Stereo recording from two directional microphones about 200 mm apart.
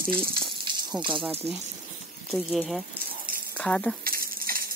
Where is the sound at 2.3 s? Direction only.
Centre (ahead or behind).